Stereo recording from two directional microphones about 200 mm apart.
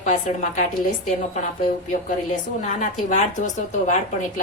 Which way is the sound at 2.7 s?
40° left (ahead or behind).